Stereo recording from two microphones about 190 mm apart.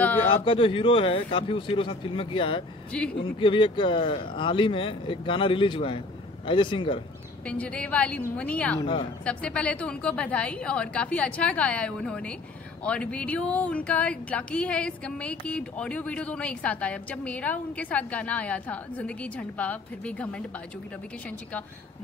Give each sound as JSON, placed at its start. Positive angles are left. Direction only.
{"t": 0.2, "sound": "speech", "side_deg": 30}
{"t": 2.9, "sound": "speech", "side_deg": 5}
{"t": 3.3, "sound": "speech", "side_deg": 25}
{"t": 7.4, "sound": "speech", "side_deg": 5}
{"t": 8.8, "sound": "speech", "side_deg": 25}
{"t": 9.2, "sound": "speech", "side_deg": 5}